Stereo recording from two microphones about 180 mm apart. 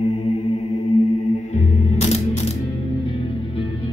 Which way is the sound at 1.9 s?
35° left (ahead or behind).